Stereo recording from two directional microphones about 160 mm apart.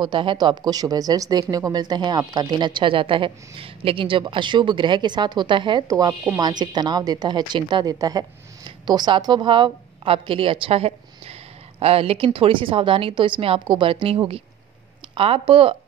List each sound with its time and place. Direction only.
0.0 s a woman's voice: 30° right (ahead or behind)